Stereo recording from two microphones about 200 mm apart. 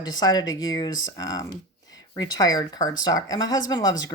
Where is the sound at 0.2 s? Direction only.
20° left (ahead or behind).